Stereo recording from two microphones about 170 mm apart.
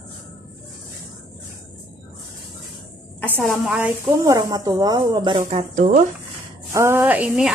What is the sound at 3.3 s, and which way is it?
A woman's voice, 10° right (ahead or behind).